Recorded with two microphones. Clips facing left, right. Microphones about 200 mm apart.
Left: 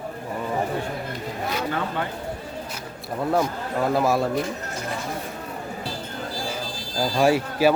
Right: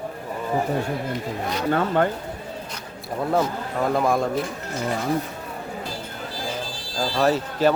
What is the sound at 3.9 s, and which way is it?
Speech, 5° left (ahead or behind).